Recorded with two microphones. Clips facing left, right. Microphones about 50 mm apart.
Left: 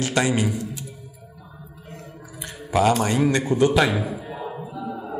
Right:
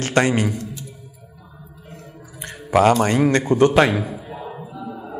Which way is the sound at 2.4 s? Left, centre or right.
Right.